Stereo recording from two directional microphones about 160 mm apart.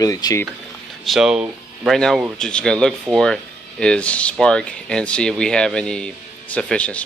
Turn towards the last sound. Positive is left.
turn(degrees=10)  # may be behind; listen again after turning